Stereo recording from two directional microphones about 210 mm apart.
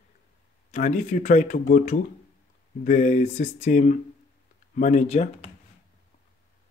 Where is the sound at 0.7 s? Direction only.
35° left (ahead or behind).